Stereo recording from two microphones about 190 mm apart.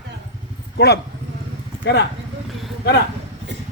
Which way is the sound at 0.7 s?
60° left (ahead or behind).